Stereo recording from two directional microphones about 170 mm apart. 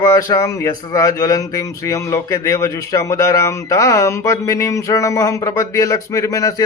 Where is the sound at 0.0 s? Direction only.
20° left (ahead or behind).